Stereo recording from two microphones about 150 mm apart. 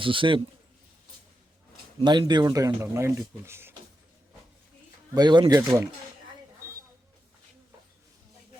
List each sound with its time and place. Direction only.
0.0 s a man's voice: 35° right (ahead or behind)
2.0 s speech: 30° right (ahead or behind)
5.1 s speech: 30° right (ahead or behind)